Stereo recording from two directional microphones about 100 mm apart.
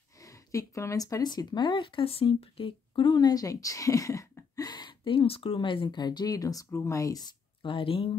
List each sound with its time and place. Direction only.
0.2 s speech: 35° left (ahead or behind); by 3.2 s 60° left (ahead or behind)
3.2 s speech: 40° left (ahead or behind)
5.2 s speech: 70° left (ahead or behind); by 7.3 s 40° left (ahead or behind)
7.6 s speech: 60° left (ahead or behind)